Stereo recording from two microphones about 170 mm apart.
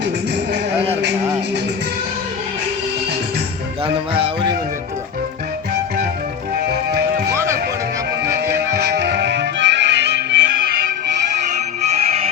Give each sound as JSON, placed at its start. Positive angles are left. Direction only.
{"t": 4.1, "sound": "speech", "side_deg": -30}
{"t": 7.3, "sound": "music", "side_deg": -15}
{"t": 8.7, "sound": "music", "side_deg": -80}
{"t": 11.9, "sound": "music", "side_deg": -40}